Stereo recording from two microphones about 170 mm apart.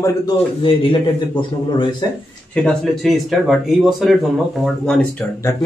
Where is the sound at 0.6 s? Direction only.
30° left (ahead or behind).